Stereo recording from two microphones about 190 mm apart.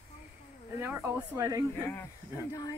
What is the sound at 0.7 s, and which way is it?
Speech, 10° right (ahead or behind).